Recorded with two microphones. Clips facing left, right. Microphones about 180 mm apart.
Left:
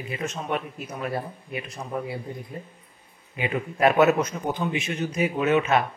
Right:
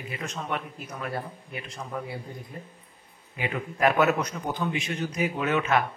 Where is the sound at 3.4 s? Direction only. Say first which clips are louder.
Left 3 dB; 25° left (ahead or behind).